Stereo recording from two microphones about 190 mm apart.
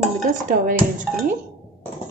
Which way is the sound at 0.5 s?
45° right (ahead or behind).